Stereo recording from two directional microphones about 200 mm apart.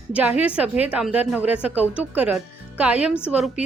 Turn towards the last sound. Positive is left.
turn(degrees=-5)  # may be behind; listen again after turning